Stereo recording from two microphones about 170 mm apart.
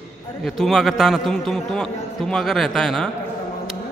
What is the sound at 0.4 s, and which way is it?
A man's voice, centre (ahead or behind).